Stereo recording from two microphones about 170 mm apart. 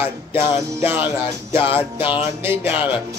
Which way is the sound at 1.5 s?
30° left (ahead or behind).